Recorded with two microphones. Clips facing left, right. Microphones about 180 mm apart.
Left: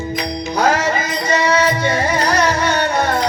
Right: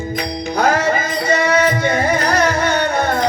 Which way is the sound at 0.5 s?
55° right (ahead or behind).